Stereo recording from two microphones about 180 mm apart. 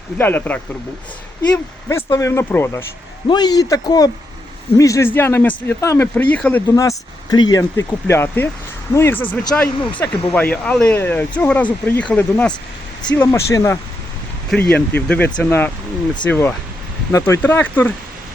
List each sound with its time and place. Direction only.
0.2 s speech: 10° left (ahead or behind)
1.9 s speech: 15° left (ahead or behind)
3.2 s speech: 25° left (ahead or behind)
6.7 s speech: 20° left (ahead or behind)
14.5 s speech: 5° left (ahead or behind)